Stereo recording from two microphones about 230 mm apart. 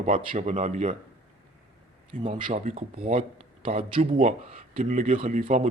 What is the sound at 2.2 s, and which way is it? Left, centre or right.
Speech, right.